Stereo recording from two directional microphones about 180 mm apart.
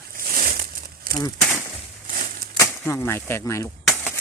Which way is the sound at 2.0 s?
50° right (ahead or behind).